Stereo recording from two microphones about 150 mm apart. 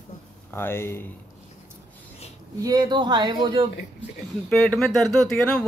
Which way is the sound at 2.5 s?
25° right (ahead or behind).